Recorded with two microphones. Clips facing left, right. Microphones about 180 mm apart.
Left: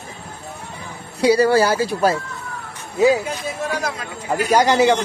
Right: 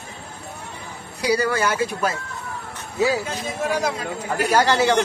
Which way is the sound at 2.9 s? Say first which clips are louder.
Left 5 dB; 20° left (ahead or behind).